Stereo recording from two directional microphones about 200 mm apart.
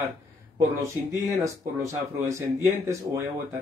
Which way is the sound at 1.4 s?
15° right (ahead or behind).